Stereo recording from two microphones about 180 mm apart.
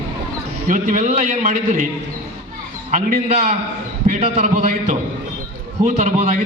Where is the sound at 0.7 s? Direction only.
45° right (ahead or behind).